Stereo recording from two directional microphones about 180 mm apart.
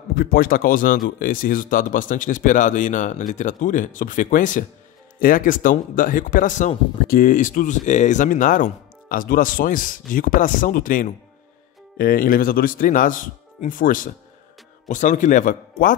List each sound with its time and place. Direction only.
0.1 s speech: 55° left (ahead or behind)